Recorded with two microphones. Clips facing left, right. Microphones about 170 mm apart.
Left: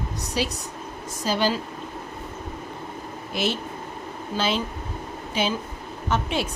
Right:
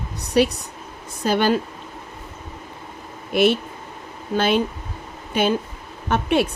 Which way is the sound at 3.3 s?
60° right (ahead or behind).